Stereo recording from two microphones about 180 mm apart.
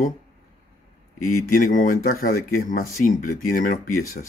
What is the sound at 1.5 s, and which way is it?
Speech, 50° left (ahead or behind).